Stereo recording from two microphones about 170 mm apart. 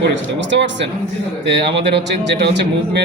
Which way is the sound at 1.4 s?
90° right.